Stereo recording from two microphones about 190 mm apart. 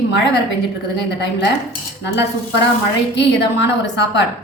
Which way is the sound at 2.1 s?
65° left (ahead or behind).